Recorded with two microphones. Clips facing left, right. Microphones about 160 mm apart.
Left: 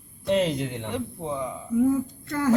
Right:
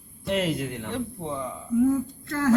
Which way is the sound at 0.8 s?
15° left (ahead or behind).